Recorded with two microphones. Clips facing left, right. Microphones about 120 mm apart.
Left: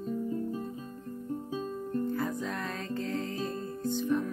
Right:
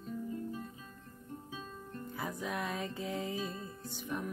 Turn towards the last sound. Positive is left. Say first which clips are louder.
# left 11 dB
turn(degrees=-10)  # may be behind; listen again after turning